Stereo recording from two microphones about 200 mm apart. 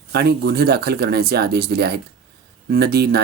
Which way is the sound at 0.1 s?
55° right (ahead or behind).